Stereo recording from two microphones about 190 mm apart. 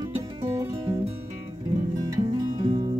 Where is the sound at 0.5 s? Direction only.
20° right (ahead or behind).